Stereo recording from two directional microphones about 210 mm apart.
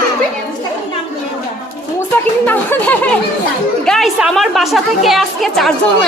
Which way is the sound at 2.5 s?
5° left (ahead or behind).